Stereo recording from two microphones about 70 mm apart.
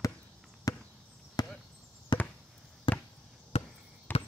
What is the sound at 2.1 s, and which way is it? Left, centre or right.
Chop, left.